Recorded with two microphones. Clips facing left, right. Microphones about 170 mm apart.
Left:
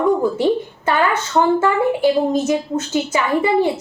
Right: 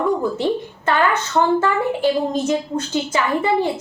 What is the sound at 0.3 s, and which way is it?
A woman's voice, 15° left (ahead or behind).